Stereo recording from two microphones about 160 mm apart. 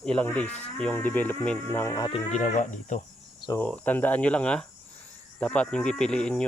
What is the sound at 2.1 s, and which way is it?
Speech, 35° left (ahead or behind).